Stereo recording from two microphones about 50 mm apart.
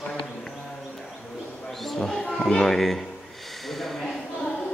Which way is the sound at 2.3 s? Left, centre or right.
Centre.